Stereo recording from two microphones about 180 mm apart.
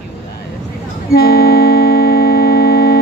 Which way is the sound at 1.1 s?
60° left (ahead or behind).